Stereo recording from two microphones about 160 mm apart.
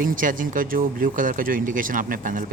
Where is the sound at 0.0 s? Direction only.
55° right (ahead or behind).